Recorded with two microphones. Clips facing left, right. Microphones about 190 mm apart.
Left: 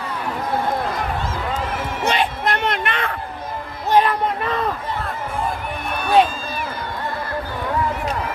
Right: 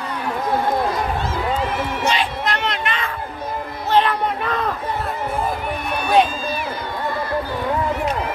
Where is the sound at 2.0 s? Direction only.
55° left (ahead or behind).